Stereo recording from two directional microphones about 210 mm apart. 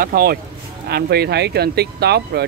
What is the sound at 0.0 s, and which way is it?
Speech, 45° right (ahead or behind).